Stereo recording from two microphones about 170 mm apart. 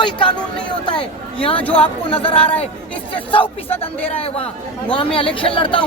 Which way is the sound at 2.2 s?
35° left (ahead or behind).